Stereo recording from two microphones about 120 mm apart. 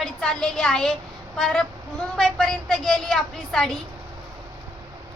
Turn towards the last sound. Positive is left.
turn(degrees=0)  # may be behind; listen again after turning